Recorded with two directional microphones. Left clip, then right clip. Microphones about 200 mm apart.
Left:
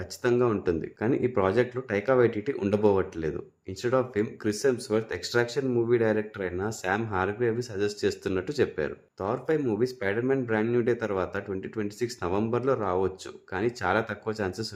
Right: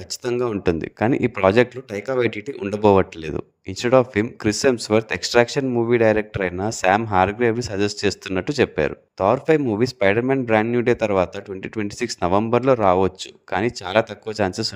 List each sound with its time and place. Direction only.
0.3 s speech: 40° right (ahead or behind)